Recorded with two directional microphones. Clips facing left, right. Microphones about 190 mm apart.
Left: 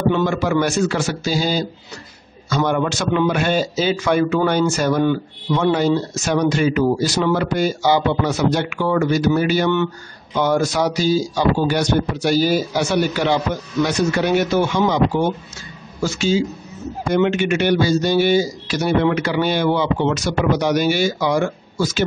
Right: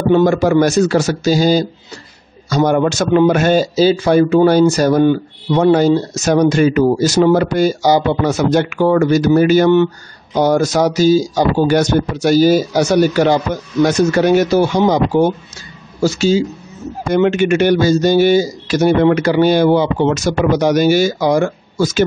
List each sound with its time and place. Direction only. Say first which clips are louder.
0.1 s speech: right 7 dB; 40° right (ahead or behind)